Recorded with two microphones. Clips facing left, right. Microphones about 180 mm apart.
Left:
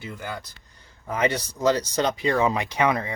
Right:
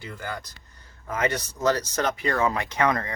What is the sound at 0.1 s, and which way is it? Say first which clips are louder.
Speech: right 1 dB; 10° left (ahead or behind).